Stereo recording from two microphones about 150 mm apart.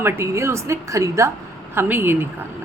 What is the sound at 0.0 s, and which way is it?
A woman's voice, 15° right (ahead or behind).